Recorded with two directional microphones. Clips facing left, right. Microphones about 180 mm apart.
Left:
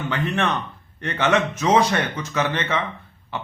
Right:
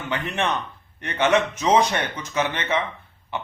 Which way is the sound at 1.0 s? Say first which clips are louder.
Even; 15° right (ahead or behind).